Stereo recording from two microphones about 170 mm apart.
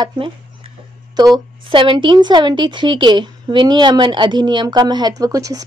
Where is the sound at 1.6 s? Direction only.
30° right (ahead or behind).